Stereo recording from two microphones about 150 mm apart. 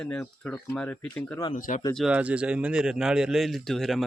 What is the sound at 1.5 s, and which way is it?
Speech, 60° left (ahead or behind).